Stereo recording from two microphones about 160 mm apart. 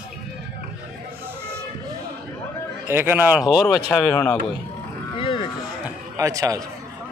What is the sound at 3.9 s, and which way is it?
Speech, 10° left (ahead or behind).